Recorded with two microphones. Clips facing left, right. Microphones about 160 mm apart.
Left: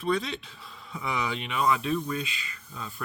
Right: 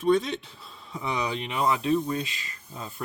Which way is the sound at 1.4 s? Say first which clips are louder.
Left 2 dB; 30° right (ahead or behind).